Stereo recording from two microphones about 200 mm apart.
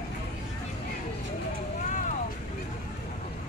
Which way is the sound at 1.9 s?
40° left (ahead or behind).